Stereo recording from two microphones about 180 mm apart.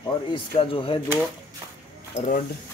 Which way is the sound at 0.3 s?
30° left (ahead or behind).